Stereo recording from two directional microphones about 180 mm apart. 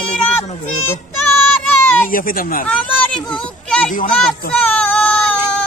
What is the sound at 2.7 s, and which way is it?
Speech, 5° left (ahead or behind).